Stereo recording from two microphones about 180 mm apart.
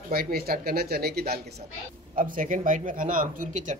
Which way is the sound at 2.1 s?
50° right (ahead or behind).